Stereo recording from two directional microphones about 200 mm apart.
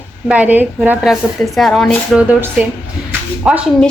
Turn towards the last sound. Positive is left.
turn(degrees=-5)  # may be behind; listen again after turning